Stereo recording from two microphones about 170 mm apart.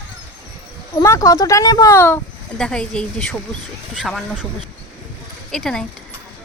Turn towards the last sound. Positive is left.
turn(degrees=0)  # may be behind; listen again after turning